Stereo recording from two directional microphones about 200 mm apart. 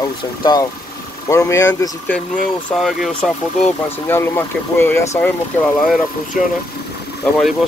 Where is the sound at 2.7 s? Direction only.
Centre (ahead or behind).